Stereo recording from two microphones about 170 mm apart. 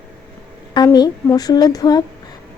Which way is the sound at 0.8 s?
20° left (ahead or behind).